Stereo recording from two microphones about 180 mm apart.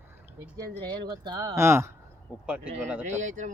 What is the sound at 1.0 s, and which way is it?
Speech, 20° right (ahead or behind).